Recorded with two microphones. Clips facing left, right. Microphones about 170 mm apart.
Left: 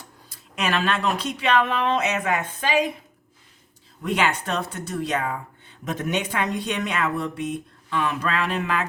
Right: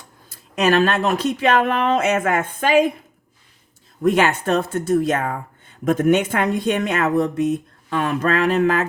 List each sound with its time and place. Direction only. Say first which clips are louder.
0.5 s speech: right 7 dB; 40° right (ahead or behind)
4.0 s speech: right 7 dB; 45° right (ahead or behind)